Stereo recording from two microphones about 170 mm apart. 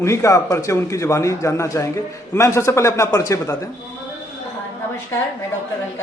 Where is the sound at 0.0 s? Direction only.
15° left (ahead or behind).